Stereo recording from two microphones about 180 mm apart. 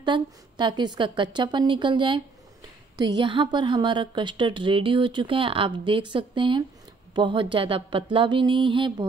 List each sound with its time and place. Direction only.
0.0 s a woman's voice: 25° right (ahead or behind)